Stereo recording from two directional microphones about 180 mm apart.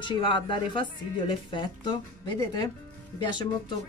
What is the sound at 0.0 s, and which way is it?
Speech, 25° left (ahead or behind).